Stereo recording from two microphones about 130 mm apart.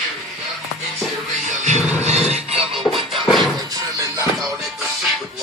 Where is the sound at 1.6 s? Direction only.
60° right (ahead or behind).